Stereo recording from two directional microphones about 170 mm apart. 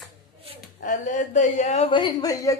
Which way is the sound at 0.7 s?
50° left (ahead or behind).